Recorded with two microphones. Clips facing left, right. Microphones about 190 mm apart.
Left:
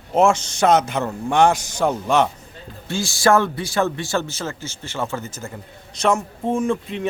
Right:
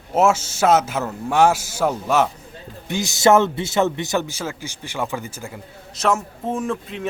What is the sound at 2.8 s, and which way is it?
Speech, 20° right (ahead or behind).